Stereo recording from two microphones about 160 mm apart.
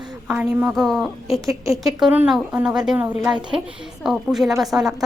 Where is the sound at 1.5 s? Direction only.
20° right (ahead or behind).